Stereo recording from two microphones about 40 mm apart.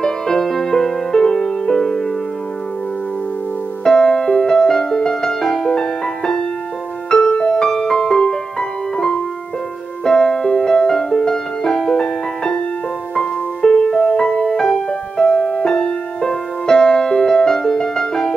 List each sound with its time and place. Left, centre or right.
0.0 s music: centre
3.8 s music: left